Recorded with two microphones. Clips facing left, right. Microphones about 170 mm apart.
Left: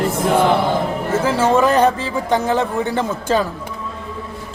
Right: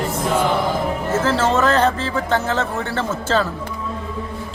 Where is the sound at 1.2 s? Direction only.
10° left (ahead or behind).